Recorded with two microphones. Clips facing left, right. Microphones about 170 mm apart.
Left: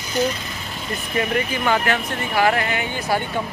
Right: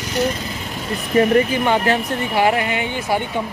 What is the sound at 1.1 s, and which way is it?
Speech, 30° right (ahead or behind).